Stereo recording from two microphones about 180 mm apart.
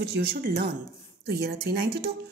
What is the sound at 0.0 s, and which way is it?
A woman's voice, 60° right (ahead or behind).